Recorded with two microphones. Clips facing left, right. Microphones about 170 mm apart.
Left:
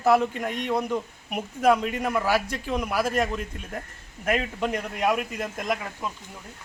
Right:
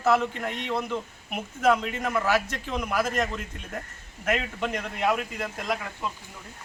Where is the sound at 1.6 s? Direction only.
10° left (ahead or behind).